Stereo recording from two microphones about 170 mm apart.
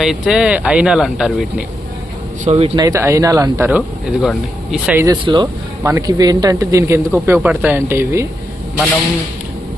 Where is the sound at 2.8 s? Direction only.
15° right (ahead or behind).